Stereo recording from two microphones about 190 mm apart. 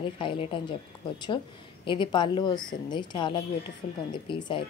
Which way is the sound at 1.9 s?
25° left (ahead or behind).